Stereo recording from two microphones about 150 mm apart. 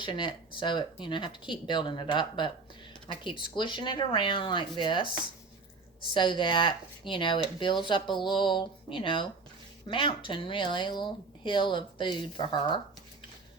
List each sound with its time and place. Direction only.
0.0 s speech: 35° left (ahead or behind)